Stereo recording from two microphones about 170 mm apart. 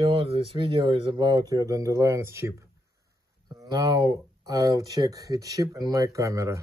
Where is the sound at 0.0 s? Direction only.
30° right (ahead or behind).